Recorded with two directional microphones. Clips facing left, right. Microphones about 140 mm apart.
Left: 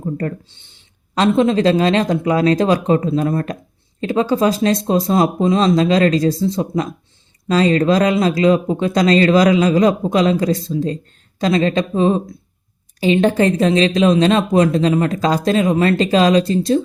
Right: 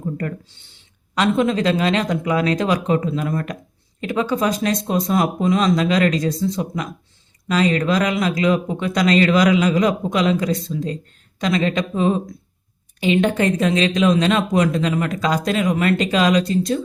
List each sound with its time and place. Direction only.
0.0 s speech: 35° left (ahead or behind)